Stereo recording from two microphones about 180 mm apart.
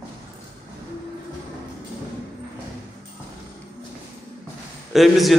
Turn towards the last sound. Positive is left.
turn(degrees=0)  # may be behind; listen again after turning